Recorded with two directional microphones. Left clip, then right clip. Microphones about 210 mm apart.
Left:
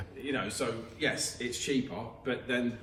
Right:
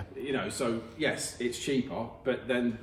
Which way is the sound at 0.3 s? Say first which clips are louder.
Right 2 dB; 50° right (ahead or behind).